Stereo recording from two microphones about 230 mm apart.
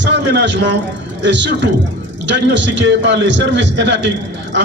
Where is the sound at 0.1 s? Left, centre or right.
Right.